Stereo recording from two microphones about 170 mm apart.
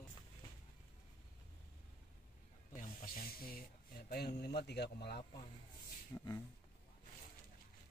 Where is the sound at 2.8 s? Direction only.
55° left (ahead or behind); by 5.2 s 75° left (ahead or behind).